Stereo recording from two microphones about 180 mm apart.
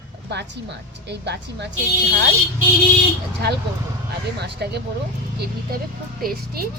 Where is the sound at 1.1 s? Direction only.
70° right (ahead or behind).